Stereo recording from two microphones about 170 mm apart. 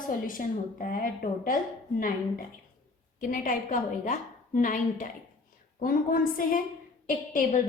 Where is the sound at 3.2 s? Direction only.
50° left (ahead or behind).